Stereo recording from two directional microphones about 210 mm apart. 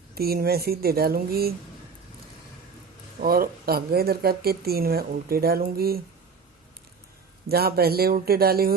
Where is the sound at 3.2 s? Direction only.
45° right (ahead or behind).